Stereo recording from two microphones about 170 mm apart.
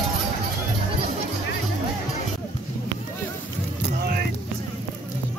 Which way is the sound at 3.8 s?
65° right (ahead or behind).